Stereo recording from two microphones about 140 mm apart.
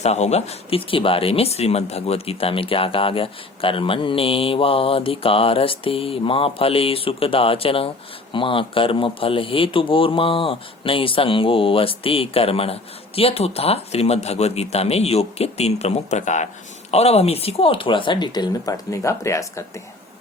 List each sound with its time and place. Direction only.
0.0 s a man's voice: 50° left (ahead or behind); by 19.8 s 20° left (ahead or behind)